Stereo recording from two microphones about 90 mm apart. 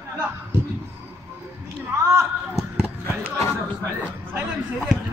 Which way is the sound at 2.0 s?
30° right (ahead or behind).